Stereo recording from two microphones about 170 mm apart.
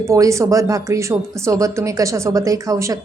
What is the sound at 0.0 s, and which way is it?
Speech, 20° right (ahead or behind).